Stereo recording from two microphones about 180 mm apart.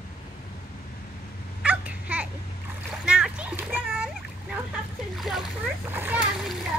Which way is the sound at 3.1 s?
5° right (ahead or behind).